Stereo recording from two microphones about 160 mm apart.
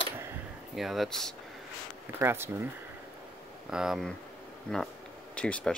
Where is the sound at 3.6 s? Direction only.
5° right (ahead or behind).